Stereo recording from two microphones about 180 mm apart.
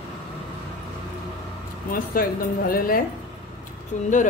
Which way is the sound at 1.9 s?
55° left (ahead or behind).